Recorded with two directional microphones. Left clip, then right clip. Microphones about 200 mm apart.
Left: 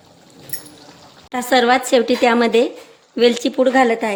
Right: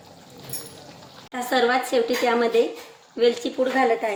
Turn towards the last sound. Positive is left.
turn(degrees=55)  # may be behind; listen again after turning